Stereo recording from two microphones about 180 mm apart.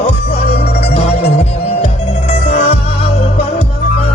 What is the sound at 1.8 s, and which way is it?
Music, 35° left (ahead or behind).